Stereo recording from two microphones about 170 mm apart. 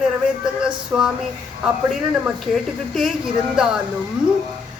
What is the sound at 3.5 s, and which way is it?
Speech, 5° right (ahead or behind).